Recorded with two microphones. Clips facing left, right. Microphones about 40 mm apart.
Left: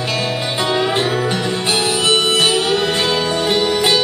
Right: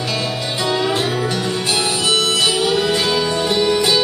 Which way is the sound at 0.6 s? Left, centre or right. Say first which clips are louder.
Left 1 dB; centre.